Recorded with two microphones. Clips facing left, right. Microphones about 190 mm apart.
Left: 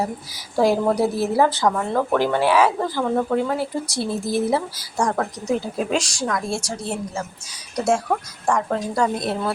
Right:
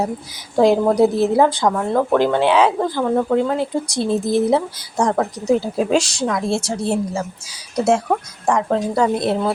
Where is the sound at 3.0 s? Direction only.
5° right (ahead or behind).